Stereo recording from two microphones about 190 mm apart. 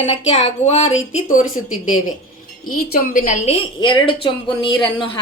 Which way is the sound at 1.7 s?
90° left.